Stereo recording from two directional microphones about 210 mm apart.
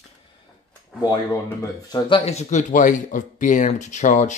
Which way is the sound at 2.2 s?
30° left (ahead or behind).